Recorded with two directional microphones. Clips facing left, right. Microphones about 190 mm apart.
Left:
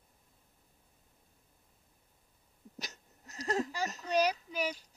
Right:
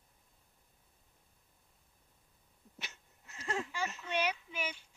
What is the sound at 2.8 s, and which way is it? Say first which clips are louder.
Speech: left 4 dB; 40° left (ahead or behind).